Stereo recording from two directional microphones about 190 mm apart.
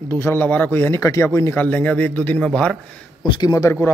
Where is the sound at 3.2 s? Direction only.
20° left (ahead or behind).